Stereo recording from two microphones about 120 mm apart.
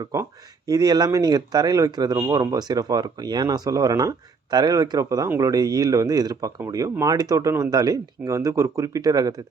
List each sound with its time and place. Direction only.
0.0 s speech: 30° right (ahead or behind)